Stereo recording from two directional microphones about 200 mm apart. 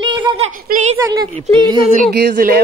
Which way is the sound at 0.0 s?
20° right (ahead or behind).